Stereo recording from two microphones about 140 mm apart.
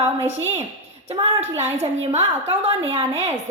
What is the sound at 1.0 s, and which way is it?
A woman's voice, 45° right (ahead or behind).